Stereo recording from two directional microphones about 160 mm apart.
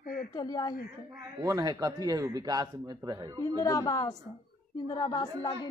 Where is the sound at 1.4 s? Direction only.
20° right (ahead or behind).